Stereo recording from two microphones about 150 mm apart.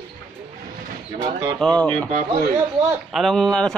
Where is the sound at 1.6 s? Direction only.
5° left (ahead or behind).